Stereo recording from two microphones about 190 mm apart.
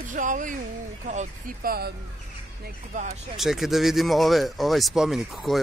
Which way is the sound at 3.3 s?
Centre (ahead or behind).